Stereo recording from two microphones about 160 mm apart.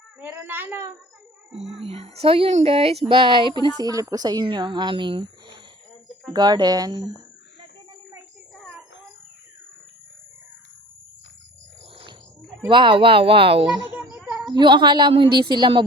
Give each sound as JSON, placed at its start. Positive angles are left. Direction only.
{"t": 0.2, "sound": "speech", "side_deg": -10}
{"t": 1.5, "sound": "a woman's voice", "side_deg": -40}
{"t": 8.5, "sound": "a sound", "side_deg": 0}
{"t": 12.6, "sound": "speech", "side_deg": -30}
{"t": 14.2, "sound": "a sound", "side_deg": -15}
{"t": 14.4, "sound": "a woman's voice", "side_deg": -25}